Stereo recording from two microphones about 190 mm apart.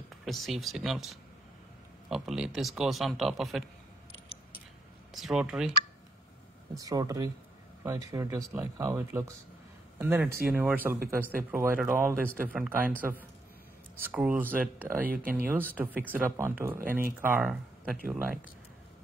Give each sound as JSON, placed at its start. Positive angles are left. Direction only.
{"t": 0.2, "sound": "speech", "side_deg": 0}
{"t": 5.1, "sound": "speech", "side_deg": 0}
{"t": 6.8, "sound": "speech", "side_deg": -20}
{"t": 14.0, "sound": "speech", "side_deg": -10}